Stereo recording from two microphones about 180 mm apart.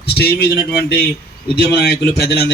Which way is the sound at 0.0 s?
65° left (ahead or behind).